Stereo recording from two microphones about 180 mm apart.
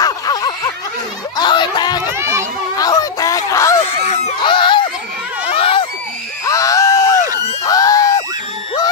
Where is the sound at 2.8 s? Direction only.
20° left (ahead or behind).